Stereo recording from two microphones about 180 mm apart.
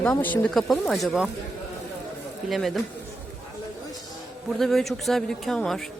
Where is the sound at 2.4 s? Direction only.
Centre (ahead or behind).